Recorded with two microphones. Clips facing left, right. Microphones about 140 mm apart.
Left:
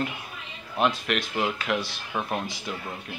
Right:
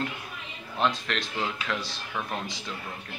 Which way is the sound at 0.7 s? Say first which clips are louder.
Left 3 dB; 10° left (ahead or behind).